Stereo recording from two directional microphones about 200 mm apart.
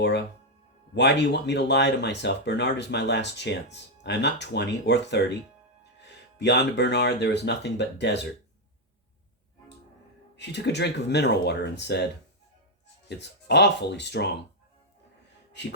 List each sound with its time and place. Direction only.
0.9 s speech: 60° left (ahead or behind)
10.3 s speech: 60° left (ahead or behind)
13.1 s speech: 60° left (ahead or behind)